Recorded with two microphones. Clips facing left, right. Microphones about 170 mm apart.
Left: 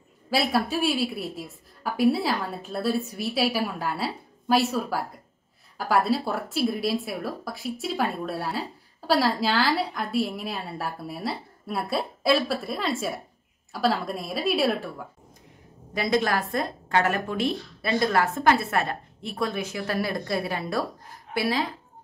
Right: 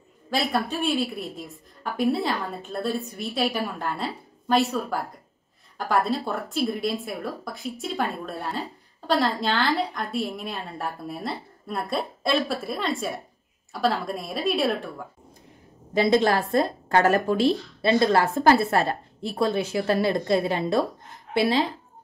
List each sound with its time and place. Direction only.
0.3 s a woman's voice: 5° left (ahead or behind)
15.9 s a woman's voice: 25° right (ahead or behind)
17.8 s a woman's voice: 25° right (ahead or behind)